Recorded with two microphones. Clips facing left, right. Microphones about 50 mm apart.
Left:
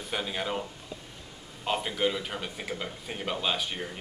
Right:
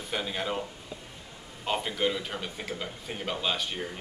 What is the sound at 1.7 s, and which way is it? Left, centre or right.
A man's voice, centre.